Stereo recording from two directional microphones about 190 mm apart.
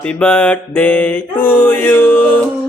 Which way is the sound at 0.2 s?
5° left (ahead or behind).